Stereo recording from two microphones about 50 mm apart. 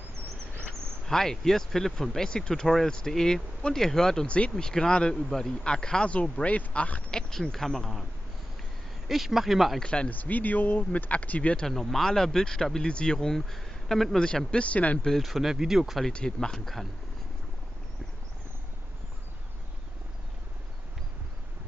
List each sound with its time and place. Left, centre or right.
0.7 s speech: centre
2.6 s speech: centre
4.3 s a man's voice: left
7.1 s speech: centre
9.0 s speech: centre
9.8 s a man's voice: centre
10.0 s speech: left
11.6 s speech: centre
14.2 s a man's voice: left
15.0 s speech: centre
16.1 s a man's voice: left
16.3 s speech: centre